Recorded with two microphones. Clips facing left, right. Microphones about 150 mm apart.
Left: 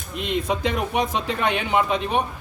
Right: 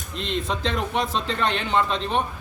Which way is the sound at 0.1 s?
10° left (ahead or behind).